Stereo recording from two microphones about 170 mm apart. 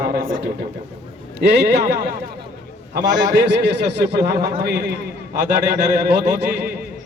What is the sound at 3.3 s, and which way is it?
A man's voice, 85° right.